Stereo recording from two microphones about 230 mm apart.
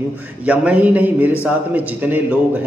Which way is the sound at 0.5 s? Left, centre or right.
Centre.